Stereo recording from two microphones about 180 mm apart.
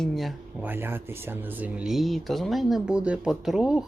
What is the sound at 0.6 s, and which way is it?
Speech, 10° right (ahead or behind).